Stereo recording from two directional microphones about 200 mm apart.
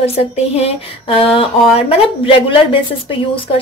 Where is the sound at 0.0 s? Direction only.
30° left (ahead or behind).